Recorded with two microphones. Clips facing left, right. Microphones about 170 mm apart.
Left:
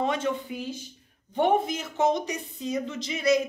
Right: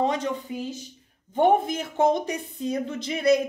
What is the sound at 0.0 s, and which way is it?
Speech, 35° right (ahead or behind).